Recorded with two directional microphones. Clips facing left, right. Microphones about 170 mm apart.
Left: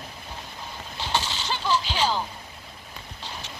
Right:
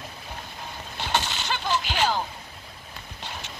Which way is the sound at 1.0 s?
55° right (ahead or behind).